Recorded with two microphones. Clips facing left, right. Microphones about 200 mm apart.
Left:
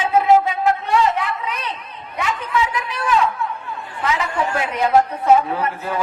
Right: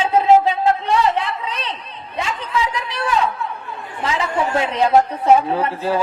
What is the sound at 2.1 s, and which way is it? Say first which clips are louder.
A woman's voice: left 1 dB; 30° right (ahead or behind).